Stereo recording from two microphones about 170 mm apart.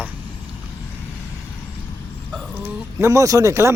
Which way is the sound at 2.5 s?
15° right (ahead or behind).